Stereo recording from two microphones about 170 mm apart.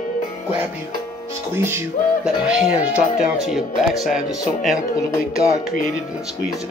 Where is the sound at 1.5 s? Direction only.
15° right (ahead or behind).